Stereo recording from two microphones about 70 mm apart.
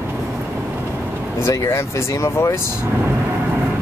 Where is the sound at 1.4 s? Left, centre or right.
Left.